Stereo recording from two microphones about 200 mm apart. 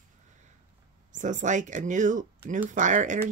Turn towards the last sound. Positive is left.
turn(degrees=-40)  # may be behind; listen again after turning